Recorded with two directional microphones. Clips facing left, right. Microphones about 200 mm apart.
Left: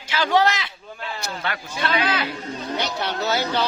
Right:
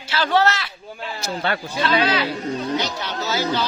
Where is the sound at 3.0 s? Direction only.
60° left (ahead or behind).